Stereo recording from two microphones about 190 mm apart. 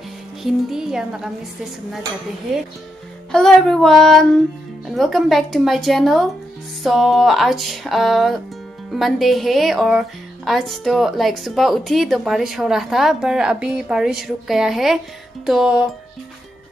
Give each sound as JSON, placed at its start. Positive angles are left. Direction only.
{"t": 0.4, "sound": "speech", "side_deg": 0}
{"t": 3.3, "sound": "speech", "side_deg": 5}